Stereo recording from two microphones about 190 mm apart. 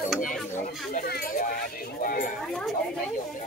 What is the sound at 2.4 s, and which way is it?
Speech, centre (ahead or behind).